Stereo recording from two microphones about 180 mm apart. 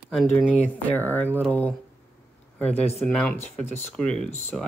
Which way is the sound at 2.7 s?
35° left (ahead or behind).